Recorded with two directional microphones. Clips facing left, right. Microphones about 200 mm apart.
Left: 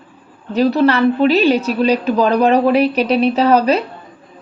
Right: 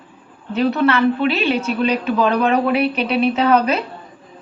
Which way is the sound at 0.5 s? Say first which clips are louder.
Left 3 dB; 35° left (ahead or behind).